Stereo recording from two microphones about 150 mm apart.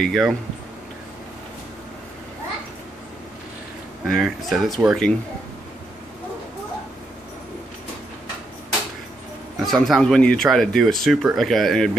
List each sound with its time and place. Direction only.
0.0 s speech: centre (ahead or behind)
4.1 s speech: centre (ahead or behind)
9.6 s speech: centre (ahead or behind)